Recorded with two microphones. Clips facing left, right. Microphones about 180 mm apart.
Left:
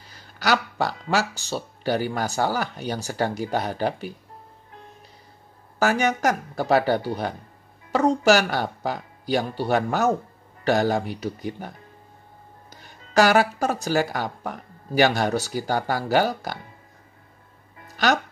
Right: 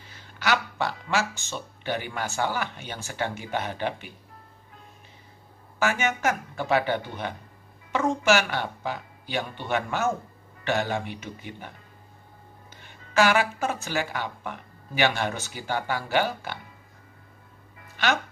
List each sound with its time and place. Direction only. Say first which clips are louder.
0.0 s speech: left 3 dB; 40° left (ahead or behind)
5.8 s speech: left 5 dB; 40° left (ahead or behind)
17.8 s music: left 4 dB; 40° left (ahead or behind)